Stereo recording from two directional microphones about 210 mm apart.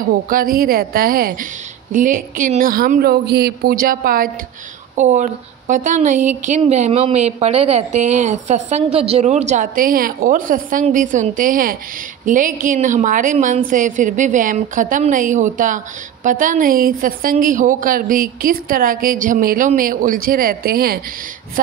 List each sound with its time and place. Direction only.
0.0 s a woman's voice: 45° right (ahead or behind)